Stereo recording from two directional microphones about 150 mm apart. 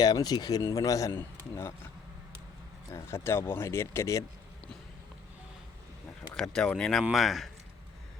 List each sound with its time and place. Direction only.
0.0 s speech: 25° left (ahead or behind)
2.9 s speech: 15° left (ahead or behind)
6.3 s speech: 5° left (ahead or behind)